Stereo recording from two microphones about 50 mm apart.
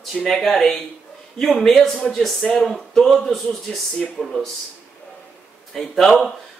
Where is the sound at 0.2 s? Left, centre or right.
Centre.